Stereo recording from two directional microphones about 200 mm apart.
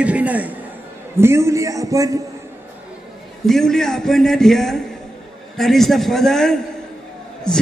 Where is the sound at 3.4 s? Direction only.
Centre (ahead or behind).